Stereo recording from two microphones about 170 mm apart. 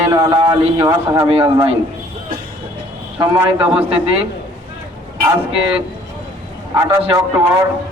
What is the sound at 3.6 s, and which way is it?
Speech, 10° right (ahead or behind).